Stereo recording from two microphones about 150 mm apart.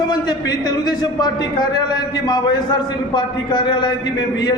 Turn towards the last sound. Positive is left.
turn(degrees=25)  # may be behind; listen again after turning